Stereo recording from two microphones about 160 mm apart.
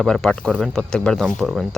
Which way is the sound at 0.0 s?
5° left (ahead or behind).